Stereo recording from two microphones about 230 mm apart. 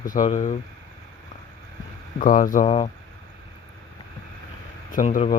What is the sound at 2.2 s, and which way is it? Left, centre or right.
Speech, left.